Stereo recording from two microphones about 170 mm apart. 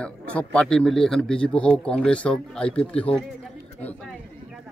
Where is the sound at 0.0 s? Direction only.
5° left (ahead or behind).